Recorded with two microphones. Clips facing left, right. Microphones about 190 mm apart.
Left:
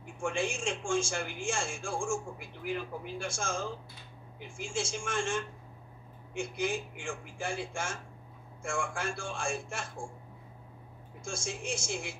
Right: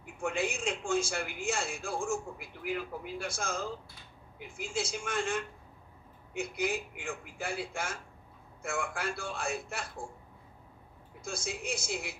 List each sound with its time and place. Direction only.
0.0 s a man's voice: 25° left (ahead or behind)
11.2 s a man's voice: 25° left (ahead or behind)